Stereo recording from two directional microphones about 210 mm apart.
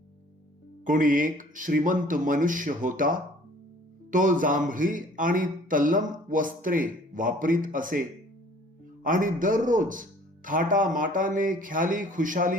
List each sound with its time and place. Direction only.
0.9 s speech: 40° right (ahead or behind)
9.0 s speech: 40° right (ahead or behind)